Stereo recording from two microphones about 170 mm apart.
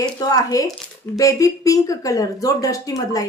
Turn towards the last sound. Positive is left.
turn(degrees=20)  # may be behind; listen again after turning